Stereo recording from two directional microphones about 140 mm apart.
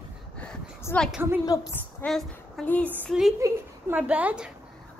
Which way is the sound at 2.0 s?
5° left (ahead or behind).